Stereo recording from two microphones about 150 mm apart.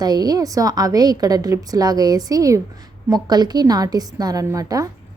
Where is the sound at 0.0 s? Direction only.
25° right (ahead or behind).